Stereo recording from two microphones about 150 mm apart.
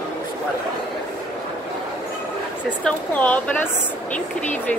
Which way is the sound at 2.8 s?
10° left (ahead or behind).